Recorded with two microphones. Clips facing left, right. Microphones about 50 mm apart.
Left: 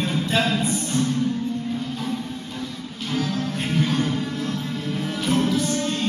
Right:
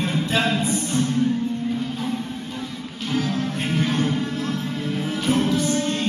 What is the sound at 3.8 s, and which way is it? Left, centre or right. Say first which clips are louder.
Music: even; centre.